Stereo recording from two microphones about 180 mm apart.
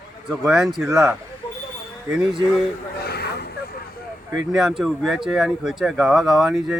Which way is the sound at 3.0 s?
60° left (ahead or behind).